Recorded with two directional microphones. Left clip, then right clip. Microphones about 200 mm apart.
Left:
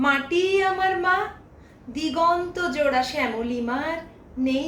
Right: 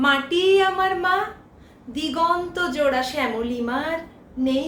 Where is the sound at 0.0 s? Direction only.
20° right (ahead or behind).